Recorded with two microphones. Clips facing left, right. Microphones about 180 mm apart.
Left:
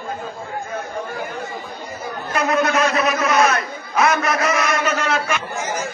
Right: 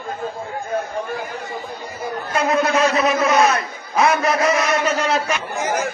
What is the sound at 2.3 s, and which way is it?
A man's voice, 30° right (ahead or behind).